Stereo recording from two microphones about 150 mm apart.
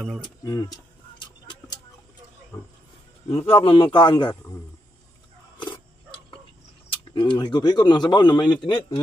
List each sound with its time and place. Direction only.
0.2 s speech: 25° left (ahead or behind)
3.3 s speech: 40° left (ahead or behind)
7.2 s speech: 30° left (ahead or behind)